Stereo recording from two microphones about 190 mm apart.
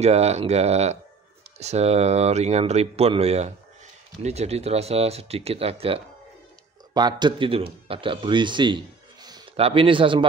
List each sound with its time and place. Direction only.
0.0 s speech: 35° right (ahead or behind)